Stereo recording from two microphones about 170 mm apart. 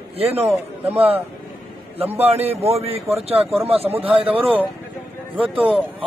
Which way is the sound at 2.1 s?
35° right (ahead or behind).